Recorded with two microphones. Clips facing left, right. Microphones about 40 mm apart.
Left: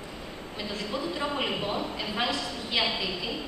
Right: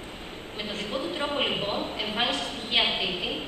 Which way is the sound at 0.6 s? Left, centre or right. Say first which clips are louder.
Right 1 dB; right.